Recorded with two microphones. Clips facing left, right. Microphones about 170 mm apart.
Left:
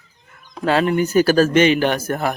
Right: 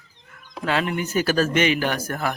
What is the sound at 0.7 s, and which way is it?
Speech, 35° left (ahead or behind).